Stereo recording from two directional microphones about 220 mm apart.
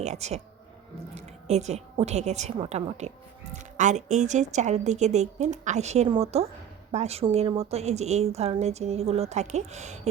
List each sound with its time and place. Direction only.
0.0 s a woman's voice: 30° right (ahead or behind)